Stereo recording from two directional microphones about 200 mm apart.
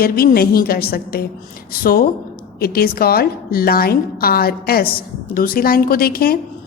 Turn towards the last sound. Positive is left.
turn(degrees=50)  # may be behind; listen again after turning